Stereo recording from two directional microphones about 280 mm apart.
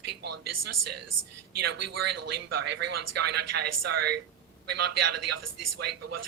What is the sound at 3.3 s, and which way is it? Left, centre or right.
Speech, right.